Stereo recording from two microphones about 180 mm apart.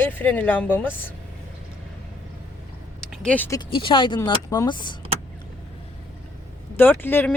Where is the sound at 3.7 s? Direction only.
30° left (ahead or behind).